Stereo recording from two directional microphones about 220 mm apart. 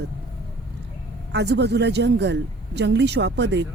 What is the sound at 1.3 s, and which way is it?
Speech, 50° right (ahead or behind).